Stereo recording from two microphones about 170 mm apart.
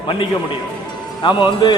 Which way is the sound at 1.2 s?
25° left (ahead or behind).